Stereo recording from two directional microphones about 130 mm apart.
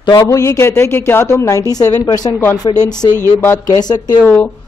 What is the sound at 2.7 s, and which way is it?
Speech, 40° left (ahead or behind).